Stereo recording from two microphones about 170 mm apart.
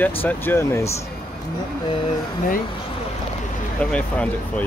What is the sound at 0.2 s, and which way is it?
Speech, 10° left (ahead or behind).